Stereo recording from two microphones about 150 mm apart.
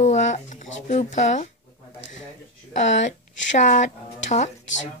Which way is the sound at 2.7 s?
55° left (ahead or behind).